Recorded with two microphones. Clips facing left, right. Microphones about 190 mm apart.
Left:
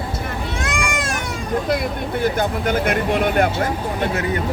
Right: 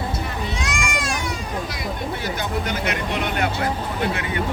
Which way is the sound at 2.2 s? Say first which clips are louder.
Left 10 dB; 50° left (ahead or behind).